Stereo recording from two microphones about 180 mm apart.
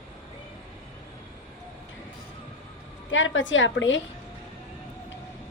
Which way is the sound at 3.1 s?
90° left.